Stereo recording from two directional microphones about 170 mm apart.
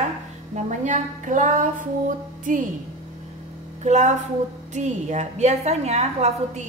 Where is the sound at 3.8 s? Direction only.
45° right (ahead or behind).